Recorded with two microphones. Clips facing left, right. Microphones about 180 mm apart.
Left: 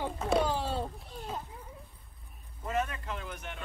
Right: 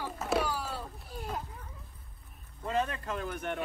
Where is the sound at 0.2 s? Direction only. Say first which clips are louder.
Left 2 dB; 5° right (ahead or behind).